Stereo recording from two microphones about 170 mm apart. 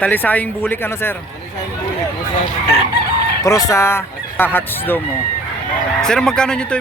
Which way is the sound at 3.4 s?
20° left (ahead or behind).